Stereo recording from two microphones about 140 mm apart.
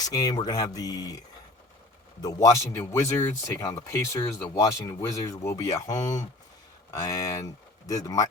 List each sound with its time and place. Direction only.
0.0 s speech: 25° left (ahead or behind)
2.2 s speech: 25° left (ahead or behind)